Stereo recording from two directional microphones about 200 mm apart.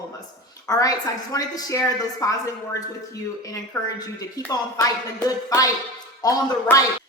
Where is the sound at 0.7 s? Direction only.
20° left (ahead or behind).